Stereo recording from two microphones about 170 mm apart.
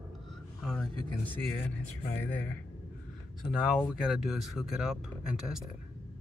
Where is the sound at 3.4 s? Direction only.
Centre (ahead or behind).